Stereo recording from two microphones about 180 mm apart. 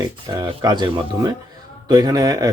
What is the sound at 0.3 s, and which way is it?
Speech, 25° right (ahead or behind).